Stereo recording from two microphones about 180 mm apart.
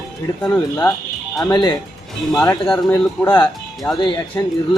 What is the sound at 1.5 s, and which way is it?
Speech, 20° left (ahead or behind).